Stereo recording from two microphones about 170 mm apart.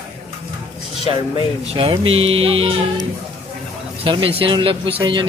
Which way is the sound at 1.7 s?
30° right (ahead or behind).